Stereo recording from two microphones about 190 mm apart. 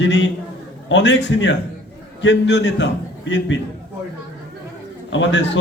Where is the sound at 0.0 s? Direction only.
70° left (ahead or behind).